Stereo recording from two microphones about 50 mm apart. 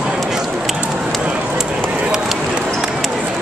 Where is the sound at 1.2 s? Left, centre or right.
Right.